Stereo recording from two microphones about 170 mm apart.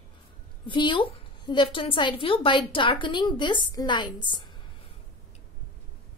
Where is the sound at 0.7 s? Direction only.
30° left (ahead or behind).